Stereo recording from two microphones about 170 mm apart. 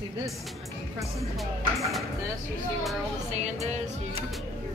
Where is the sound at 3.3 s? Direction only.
40° right (ahead or behind).